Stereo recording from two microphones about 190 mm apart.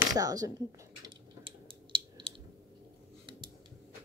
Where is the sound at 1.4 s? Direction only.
25° right (ahead or behind).